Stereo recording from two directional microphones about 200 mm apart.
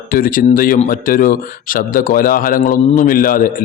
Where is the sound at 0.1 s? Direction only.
45° left (ahead or behind).